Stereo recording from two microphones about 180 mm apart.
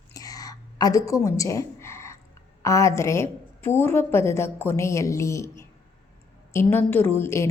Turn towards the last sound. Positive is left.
turn(degrees=15)  # may be behind; listen again after turning